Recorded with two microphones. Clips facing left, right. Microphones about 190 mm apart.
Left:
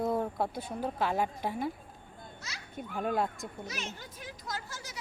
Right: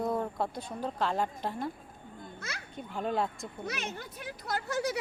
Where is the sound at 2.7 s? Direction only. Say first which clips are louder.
Left 1 dB; 5° left (ahead or behind).